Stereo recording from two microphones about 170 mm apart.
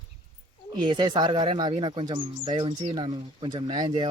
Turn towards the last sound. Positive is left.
turn(degrees=-25)  # may be behind; listen again after turning